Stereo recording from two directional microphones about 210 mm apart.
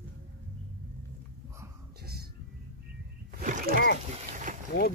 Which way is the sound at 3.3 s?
40° right (ahead or behind).